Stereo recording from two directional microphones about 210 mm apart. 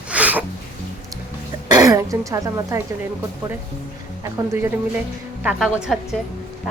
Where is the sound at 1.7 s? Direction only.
15° right (ahead or behind).